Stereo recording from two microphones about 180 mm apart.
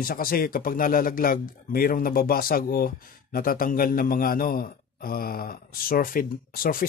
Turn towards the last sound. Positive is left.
turn(degrees=50)  # may be behind; listen again after turning